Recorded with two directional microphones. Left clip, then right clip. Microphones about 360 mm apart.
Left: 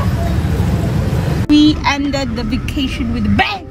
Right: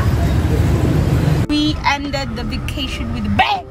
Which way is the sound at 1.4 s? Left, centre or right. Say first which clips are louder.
Left 6 dB; centre.